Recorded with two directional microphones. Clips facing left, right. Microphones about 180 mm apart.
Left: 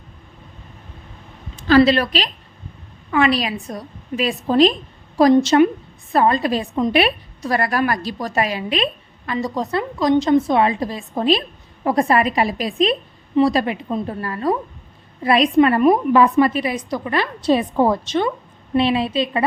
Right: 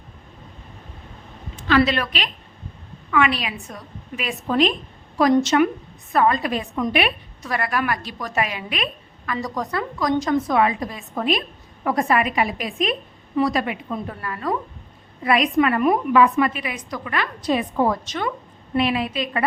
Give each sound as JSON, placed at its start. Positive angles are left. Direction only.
{"t": 1.5, "sound": "a woman's voice", "side_deg": 35}